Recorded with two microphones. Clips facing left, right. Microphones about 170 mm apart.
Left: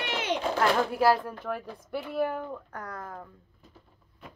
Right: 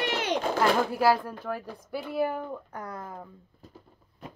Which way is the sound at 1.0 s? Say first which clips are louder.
Even; centre (ahead or behind).